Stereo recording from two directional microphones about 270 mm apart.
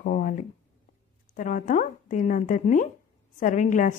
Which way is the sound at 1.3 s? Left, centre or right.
Left.